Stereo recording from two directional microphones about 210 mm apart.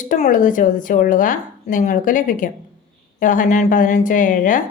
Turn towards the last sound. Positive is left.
turn(degrees=40)  # may be behind; listen again after turning